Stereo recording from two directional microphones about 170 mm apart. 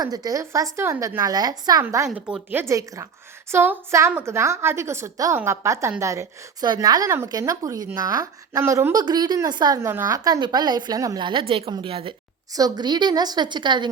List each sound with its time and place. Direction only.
0.0 s a woman's voice: 20° right (ahead or behind)
2.0 s a woman's voice: 5° right (ahead or behind); by 13.9 s 25° right (ahead or behind)